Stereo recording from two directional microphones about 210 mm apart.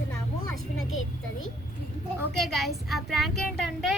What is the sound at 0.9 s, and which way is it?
Speech, 75° left (ahead or behind).